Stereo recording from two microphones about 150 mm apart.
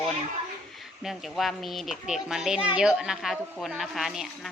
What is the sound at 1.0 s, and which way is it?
A child's voice, centre (ahead or behind).